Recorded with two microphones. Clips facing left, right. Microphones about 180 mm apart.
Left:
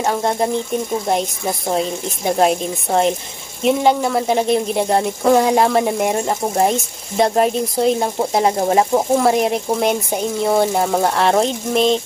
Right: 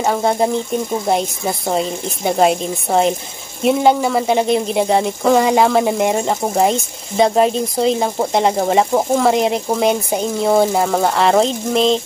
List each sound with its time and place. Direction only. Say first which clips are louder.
0.0 s speech: right 2 dB; centre (ahead or behind)